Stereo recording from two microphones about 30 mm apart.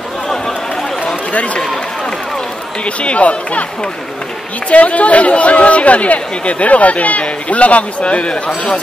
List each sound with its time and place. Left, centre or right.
1.3 s speech: left
2.8 s speech: left
4.6 s speech: left